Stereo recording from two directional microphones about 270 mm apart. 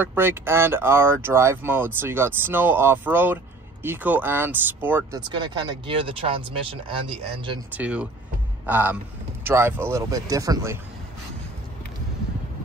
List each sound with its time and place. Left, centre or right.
0.0 s speech: centre
7.7 s speech: centre